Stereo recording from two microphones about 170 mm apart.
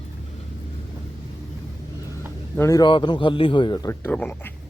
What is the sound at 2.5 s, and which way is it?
A man's voice, 20° left (ahead or behind).